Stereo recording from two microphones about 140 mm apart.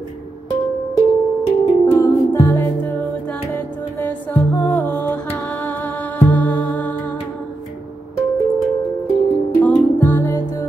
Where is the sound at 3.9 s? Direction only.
15° left (ahead or behind).